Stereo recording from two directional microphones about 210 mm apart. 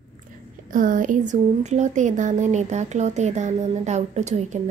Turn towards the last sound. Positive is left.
turn(degrees=-35)  # may be behind; listen again after turning